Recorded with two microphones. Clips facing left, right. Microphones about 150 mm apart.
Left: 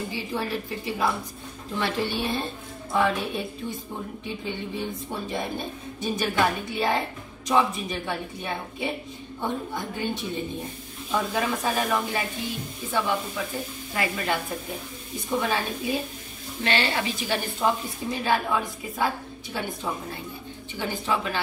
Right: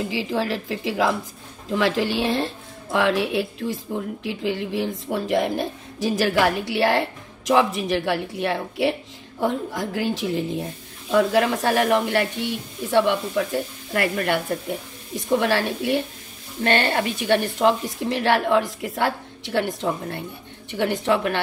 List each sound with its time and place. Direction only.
0.1 s a woman's voice: 90° right; by 14.4 s 65° right (ahead or behind)
15.1 s a woman's voice: 80° right
16.6 s a woman's voice: 55° right (ahead or behind)